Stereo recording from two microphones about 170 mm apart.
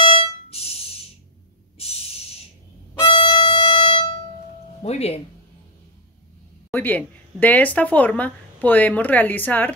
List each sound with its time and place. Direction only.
0.0 s a sound: 30° left (ahead or behind)
3.0 s music: 30° left (ahead or behind)
4.8 s speech: 40° left (ahead or behind)
6.7 s speech: 10° left (ahead or behind)